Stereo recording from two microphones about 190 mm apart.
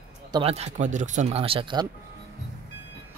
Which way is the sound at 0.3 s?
30° right (ahead or behind).